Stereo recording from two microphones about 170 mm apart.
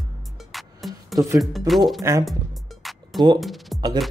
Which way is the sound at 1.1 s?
20° right (ahead or behind).